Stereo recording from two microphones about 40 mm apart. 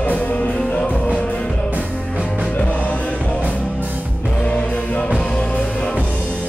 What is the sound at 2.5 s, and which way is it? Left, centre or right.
Music, left.